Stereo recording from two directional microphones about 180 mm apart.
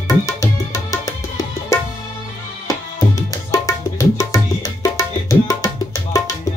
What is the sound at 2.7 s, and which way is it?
Tabla, 15° left (ahead or behind).